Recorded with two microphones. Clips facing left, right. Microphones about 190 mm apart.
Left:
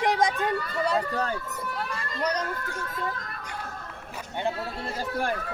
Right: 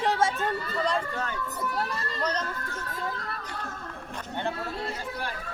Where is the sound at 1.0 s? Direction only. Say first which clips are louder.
Left 4 dB; 35° left (ahead or behind).